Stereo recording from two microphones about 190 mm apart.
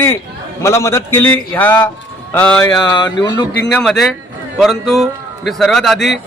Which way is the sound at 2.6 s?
20° left (ahead or behind).